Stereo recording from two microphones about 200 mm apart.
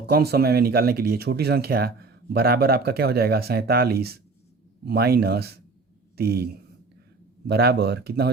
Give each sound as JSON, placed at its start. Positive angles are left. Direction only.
{"t": 0.0, "sound": "speech", "side_deg": -50}